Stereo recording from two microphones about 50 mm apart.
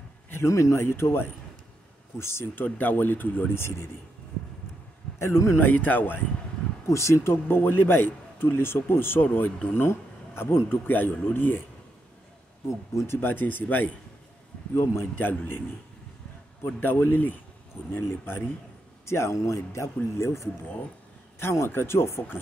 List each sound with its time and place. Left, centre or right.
0.5 s speech: left
2.6 s a man's voice: left
5.2 s a man's voice: left
5.6 s speech: left
6.9 s a man's voice: left
7.4 s a man's voice: left
10.9 s a man's voice: left
12.6 s a man's voice: left
14.7 s speech: left
15.1 s a man's voice: left
16.6 s a man's voice: left
19.0 s a man's voice: left
20.2 s a man's voice: left